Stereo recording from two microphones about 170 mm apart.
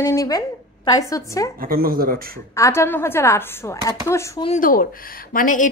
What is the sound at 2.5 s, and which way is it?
A woman's voice, 15° left (ahead or behind).